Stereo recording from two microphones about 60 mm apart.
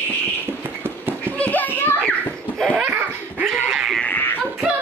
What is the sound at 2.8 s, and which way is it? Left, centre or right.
Dog, right.